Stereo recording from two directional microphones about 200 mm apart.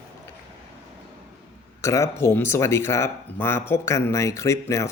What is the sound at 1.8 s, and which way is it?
Speech, 15° left (ahead or behind).